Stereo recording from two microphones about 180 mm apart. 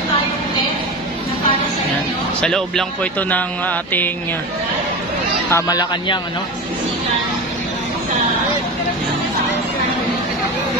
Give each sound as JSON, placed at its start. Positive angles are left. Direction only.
{"t": 2.4, "sound": "speech", "side_deg": 5}
{"t": 5.5, "sound": "speech", "side_deg": 20}